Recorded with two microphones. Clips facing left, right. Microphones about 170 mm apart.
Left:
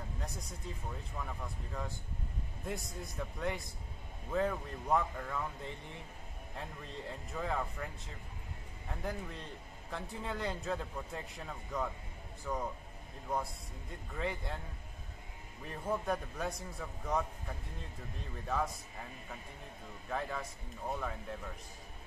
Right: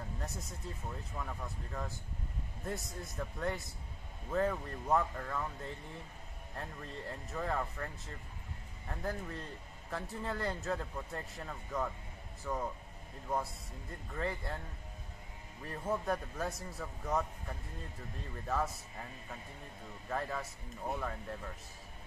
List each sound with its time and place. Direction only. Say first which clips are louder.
0.2 s speech: right 1 dB; 5° right (ahead or behind)
15.6 s speech: even; centre (ahead or behind)
20.1 s speech: even; centre (ahead or behind)